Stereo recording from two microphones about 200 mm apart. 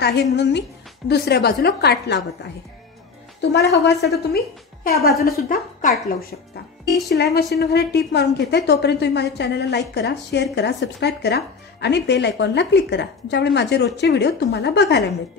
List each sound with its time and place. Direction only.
0.0 s speech: 55° left (ahead or behind)
3.3 s a woman's voice: 60° left (ahead or behind)
7.3 s speech: 55° left (ahead or behind)